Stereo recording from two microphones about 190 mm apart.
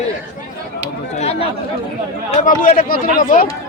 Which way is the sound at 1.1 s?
35° left (ahead or behind).